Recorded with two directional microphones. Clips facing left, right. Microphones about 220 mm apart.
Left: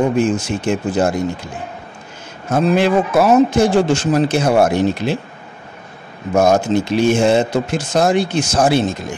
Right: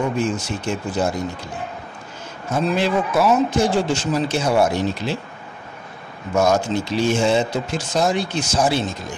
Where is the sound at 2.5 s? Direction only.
55° left (ahead or behind).